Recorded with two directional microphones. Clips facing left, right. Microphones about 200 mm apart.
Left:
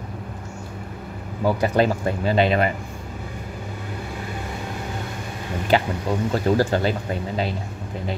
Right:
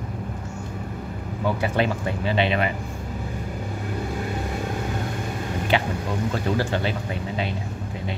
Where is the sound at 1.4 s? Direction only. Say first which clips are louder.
Left 4 dB; 40° left (ahead or behind).